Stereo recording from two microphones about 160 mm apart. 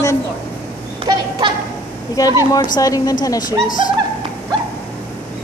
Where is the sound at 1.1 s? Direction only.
30° right (ahead or behind).